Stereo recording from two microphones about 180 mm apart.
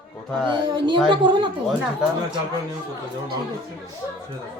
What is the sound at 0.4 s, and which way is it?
Speech, 25° right (ahead or behind).